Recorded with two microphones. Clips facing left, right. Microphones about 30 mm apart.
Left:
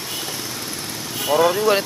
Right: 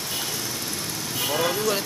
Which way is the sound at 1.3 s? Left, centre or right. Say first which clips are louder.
Left 8 dB; left.